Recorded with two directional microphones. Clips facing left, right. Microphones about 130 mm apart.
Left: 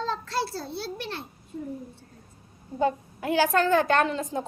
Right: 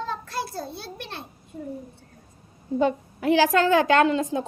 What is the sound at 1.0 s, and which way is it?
Speech, 20° right (ahead or behind).